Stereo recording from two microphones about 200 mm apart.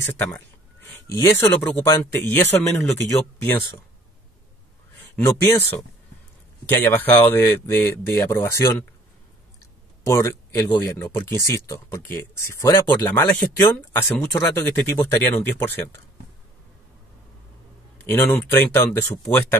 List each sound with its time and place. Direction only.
0.2 s speech: 10° left (ahead or behind)
5.1 s speech: 10° left (ahead or behind)
6.7 s speech: 10° left (ahead or behind)
10.0 s speech: 15° left (ahead or behind)
17.9 s speech: 10° left (ahead or behind)